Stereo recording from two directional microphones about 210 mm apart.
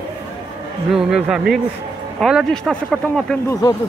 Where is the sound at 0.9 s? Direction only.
Centre (ahead or behind).